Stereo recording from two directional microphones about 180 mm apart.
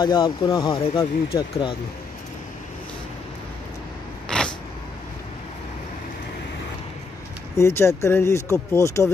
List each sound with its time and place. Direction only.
0.0 s speech: 25° left (ahead or behind)
0.7 s speech: 30° left (ahead or behind)
7.5 s speech: 15° left (ahead or behind)